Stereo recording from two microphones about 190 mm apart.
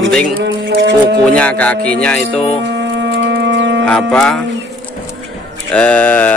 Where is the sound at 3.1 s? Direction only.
70° right (ahead or behind).